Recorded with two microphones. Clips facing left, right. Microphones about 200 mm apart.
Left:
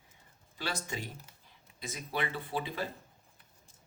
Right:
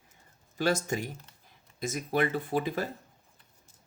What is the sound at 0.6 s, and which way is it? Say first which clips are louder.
Speech: right 10 dB; 45° right (ahead or behind).